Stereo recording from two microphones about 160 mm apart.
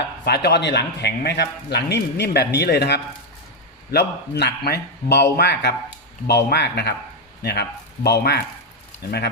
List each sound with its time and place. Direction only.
0.3 s speech: 90° left